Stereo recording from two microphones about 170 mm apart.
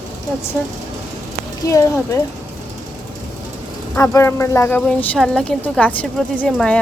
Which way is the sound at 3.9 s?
15° left (ahead or behind).